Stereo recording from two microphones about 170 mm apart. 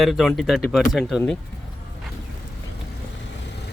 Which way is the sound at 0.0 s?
Centre (ahead or behind).